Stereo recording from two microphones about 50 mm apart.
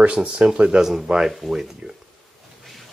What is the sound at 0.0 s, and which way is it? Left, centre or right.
Speech, right.